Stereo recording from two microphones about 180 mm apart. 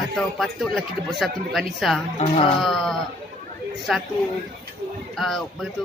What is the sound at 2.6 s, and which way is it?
A man's voice, centre (ahead or behind).